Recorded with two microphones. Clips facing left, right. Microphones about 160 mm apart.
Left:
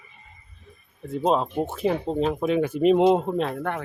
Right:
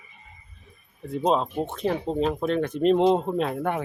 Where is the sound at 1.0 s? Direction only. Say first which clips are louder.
Left 1 dB; 5° left (ahead or behind).